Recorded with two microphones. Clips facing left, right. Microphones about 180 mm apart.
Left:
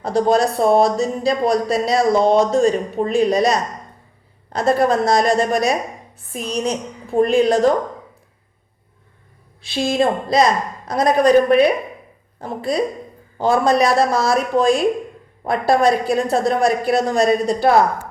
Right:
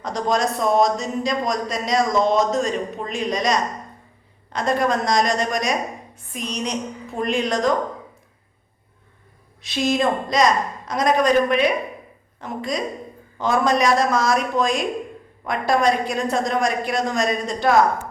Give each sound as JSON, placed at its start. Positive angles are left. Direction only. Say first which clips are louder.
{"t": 0.0, "sound": "speech", "louder": "left 6 dB", "side_deg": 35}
{"t": 9.6, "sound": "speech", "louder": "left 2 dB", "side_deg": 30}